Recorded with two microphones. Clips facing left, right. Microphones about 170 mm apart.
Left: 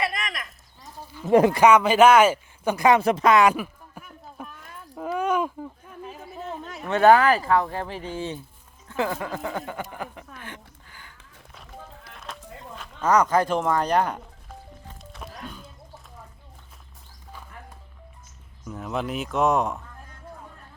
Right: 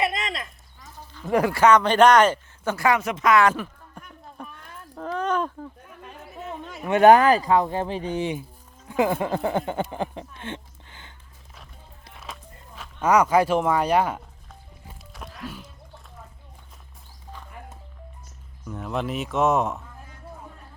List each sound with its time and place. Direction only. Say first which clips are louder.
0.0 s a sound: right 3 dB; 25° right (ahead or behind)
1.3 s speech: left 5 dB; 20° left (ahead or behind)
1.6 s speech: right 3 dB; 10° left (ahead or behind)
3.0 s speech: left 3 dB; 35° left (ahead or behind)
3.3 s a sound: left 1 dB; 10° left (ahead or behind)
6.8 s speech: right 2 dB; 15° right (ahead or behind)
9.1 s speech: right 6 dB; 30° right (ahead or behind)
12.4 s a sound: left 8 dB; 90° left
13.0 s speech: right 2 dB; 10° right (ahead or behind)
14.8 s music: right 1 dB; 5° right (ahead or behind)
18.6 s speech: right 1 dB; centre (ahead or behind)